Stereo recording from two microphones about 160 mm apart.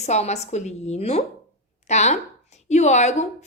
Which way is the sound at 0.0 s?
45° left (ahead or behind).